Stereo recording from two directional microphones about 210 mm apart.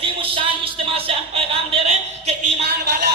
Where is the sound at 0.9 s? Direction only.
25° right (ahead or behind).